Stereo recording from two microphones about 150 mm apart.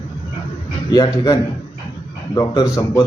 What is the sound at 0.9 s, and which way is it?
Speech, 25° left (ahead or behind).